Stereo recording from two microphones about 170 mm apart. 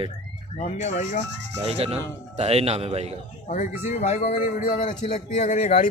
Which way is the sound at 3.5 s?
45° left (ahead or behind).